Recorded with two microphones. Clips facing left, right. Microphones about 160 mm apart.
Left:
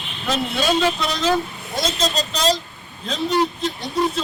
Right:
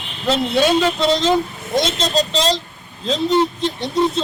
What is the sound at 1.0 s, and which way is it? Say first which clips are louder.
Speech: right 5 dB; 25° right (ahead or behind).